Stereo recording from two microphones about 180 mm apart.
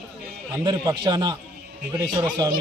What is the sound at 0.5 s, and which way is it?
Speech, 20° right (ahead or behind).